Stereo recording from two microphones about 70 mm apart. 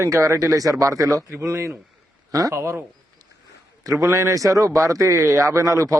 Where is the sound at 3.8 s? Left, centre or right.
Right.